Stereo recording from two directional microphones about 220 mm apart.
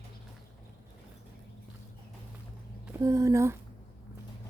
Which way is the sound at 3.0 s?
15° right (ahead or behind).